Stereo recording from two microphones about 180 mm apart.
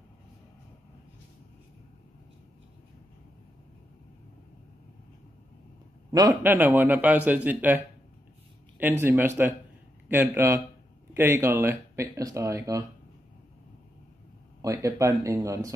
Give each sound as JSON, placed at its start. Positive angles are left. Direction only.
{"t": 6.1, "sound": "a man's voice", "side_deg": -15}
{"t": 9.0, "sound": "a man's voice", "side_deg": -10}
{"t": 14.6, "sound": "a man's voice", "side_deg": -20}